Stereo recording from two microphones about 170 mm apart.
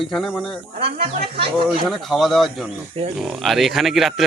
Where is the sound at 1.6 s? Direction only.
Centre (ahead or behind).